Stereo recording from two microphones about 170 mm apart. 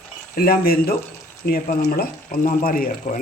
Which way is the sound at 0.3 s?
60° left (ahead or behind).